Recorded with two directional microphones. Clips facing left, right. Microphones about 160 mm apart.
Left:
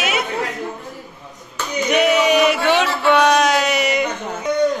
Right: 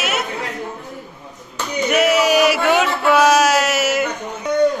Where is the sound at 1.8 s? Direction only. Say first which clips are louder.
Even; 5° right (ahead or behind).